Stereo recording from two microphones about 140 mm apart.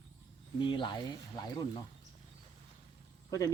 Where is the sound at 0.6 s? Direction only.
35° left (ahead or behind).